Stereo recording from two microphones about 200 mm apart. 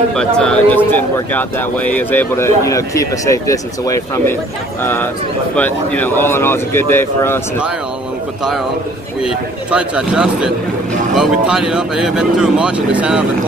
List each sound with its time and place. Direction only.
0.1 s speech: 5° left (ahead or behind)
5.6 s speech: 10° left (ahead or behind)
9.2 s speech: 5° right (ahead or behind)